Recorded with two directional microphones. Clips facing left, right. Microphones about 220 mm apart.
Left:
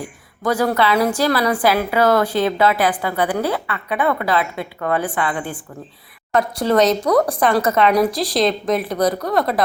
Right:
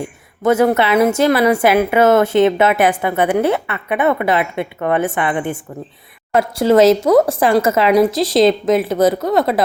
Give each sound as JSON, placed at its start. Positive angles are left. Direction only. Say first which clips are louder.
{"t": 0.0, "sound": "speech", "louder": "right 6 dB", "side_deg": -25}